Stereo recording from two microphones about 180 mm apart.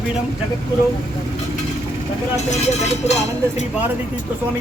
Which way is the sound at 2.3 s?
40° left (ahead or behind).